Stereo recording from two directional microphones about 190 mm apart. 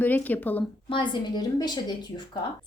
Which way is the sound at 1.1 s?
20° left (ahead or behind).